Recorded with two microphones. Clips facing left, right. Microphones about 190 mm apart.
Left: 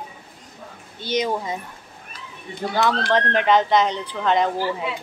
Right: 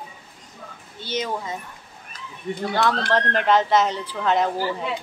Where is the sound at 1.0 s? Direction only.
15° left (ahead or behind).